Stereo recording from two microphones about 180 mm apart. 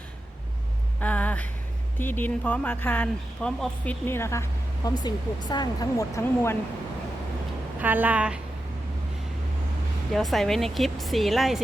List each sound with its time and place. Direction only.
0.9 s a sound: 10° left (ahead or behind)
2.0 s speech: 10° left (ahead or behind)
7.8 s a woman's voice: 10° right (ahead or behind)
10.1 s speech: centre (ahead or behind)